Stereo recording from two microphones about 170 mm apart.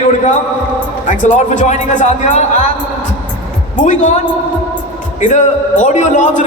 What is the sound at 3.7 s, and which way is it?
Speech, 45° left (ahead or behind).